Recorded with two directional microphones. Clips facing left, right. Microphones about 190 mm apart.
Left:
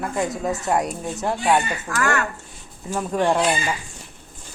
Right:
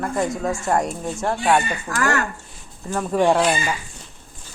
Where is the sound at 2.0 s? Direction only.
35° right (ahead or behind).